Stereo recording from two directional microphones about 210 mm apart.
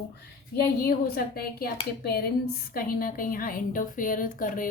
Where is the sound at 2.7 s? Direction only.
45° left (ahead or behind).